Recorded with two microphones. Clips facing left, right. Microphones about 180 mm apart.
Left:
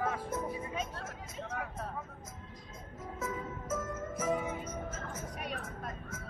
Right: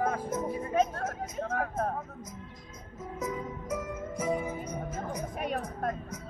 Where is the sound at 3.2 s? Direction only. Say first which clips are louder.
Right 4 dB; 15° right (ahead or behind).